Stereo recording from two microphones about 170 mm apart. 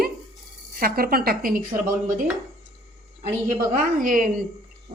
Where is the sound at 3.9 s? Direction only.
55° right (ahead or behind).